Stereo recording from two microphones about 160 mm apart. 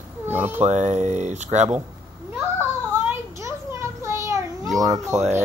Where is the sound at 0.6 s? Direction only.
45° right (ahead or behind).